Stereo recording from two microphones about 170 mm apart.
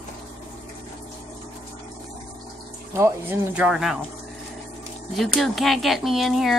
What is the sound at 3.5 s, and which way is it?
Speech, 5° right (ahead or behind).